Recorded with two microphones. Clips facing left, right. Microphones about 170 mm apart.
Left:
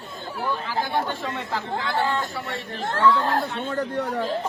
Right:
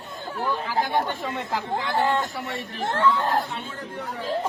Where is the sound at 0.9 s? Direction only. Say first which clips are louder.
Right 1 dB; 15° right (ahead or behind).